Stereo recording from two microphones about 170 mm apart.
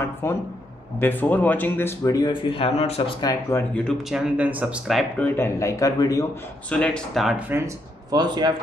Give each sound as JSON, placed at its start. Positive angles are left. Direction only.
{"t": 0.0, "sound": "speech", "side_deg": 15}
{"t": 3.2, "sound": "speech", "side_deg": 25}
{"t": 3.7, "sound": "speech", "side_deg": 5}
{"t": 4.4, "sound": "speech", "side_deg": -10}
{"t": 5.2, "sound": "speech", "side_deg": 15}
{"t": 6.7, "sound": "speech", "side_deg": 5}